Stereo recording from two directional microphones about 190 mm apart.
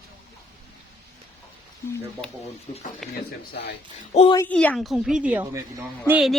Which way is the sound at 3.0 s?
5° left (ahead or behind).